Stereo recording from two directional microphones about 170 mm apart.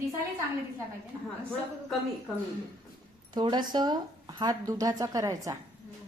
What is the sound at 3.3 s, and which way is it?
A woman's voice, 25° right (ahead or behind).